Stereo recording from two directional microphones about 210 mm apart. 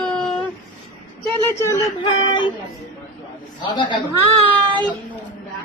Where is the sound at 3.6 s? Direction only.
20° left (ahead or behind).